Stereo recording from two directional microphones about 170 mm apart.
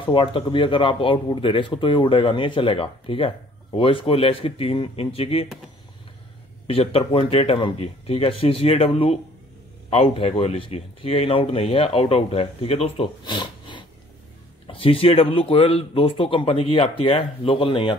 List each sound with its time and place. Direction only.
0.0 s speech: 30° left (ahead or behind)
6.7 s speech: 35° left (ahead or behind)